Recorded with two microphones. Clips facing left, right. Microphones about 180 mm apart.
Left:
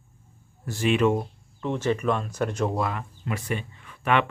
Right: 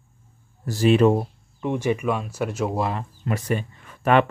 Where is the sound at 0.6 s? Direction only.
40° right (ahead or behind).